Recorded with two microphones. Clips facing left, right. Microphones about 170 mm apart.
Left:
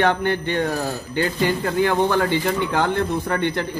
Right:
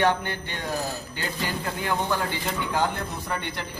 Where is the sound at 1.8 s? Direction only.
75° left (ahead or behind).